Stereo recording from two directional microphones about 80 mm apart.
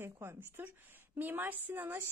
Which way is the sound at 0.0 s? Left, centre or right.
Right.